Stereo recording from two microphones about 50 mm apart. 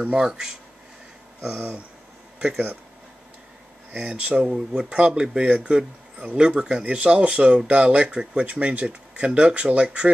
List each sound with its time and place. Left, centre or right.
0.0 s speech: right
1.5 s speech: right
4.0 s speech: right